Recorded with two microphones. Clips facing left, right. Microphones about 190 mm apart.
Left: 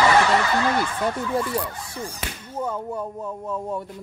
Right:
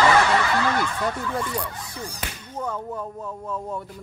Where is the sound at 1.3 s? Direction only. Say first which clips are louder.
Left 3 dB; 5° left (ahead or behind).